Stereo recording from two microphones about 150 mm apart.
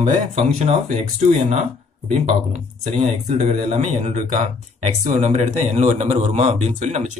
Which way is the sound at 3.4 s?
45° right (ahead or behind).